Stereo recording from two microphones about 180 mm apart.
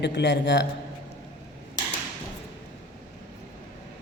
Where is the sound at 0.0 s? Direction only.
70° left (ahead or behind).